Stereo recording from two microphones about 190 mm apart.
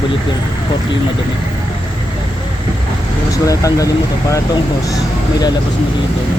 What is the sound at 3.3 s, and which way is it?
Speech, 20° left (ahead or behind).